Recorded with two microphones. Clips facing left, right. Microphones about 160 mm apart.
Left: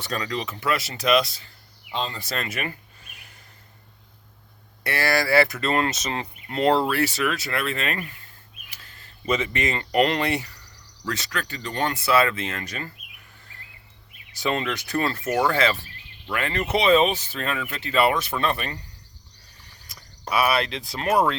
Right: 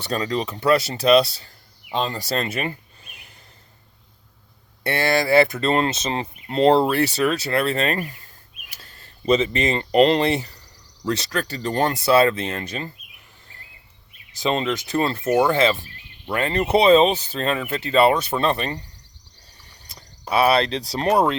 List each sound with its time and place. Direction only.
0.0 s speech: 30° right (ahead or behind)
1.9 s speech: 45° right (ahead or behind)
2.2 s speech: 30° right (ahead or behind)
4.8 s speech: 25° right (ahead or behind)
14.4 s speech: 20° right (ahead or behind)
20.3 s speech: 30° right (ahead or behind)